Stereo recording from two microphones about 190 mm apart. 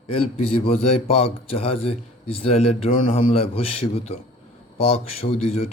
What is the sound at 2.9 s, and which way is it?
Speech, 45° left (ahead or behind).